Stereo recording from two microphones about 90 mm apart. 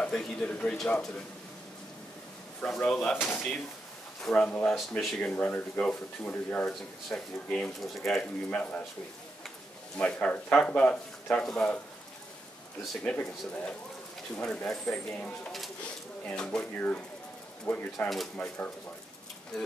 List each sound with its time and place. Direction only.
0.0 s speech: 5° left (ahead or behind)
2.6 s speech: 10° left (ahead or behind)
4.5 s speech: 15° left (ahead or behind)
6.6 s speech: 5° left (ahead or behind)
8.5 s speech: 15° left (ahead or behind)
9.9 s speech: 15° left (ahead or behind)
12.9 s speech: 10° left (ahead or behind)